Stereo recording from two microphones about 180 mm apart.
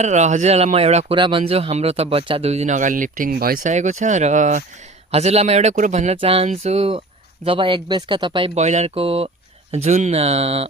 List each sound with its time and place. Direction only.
0.0 s speech: 40° right (ahead or behind)